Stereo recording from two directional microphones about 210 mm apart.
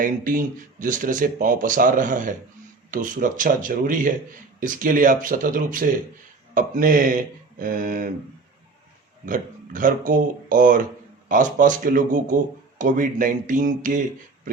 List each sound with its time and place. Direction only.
0.0 s speech: 40° right (ahead or behind)
9.2 s speech: 40° right (ahead or behind)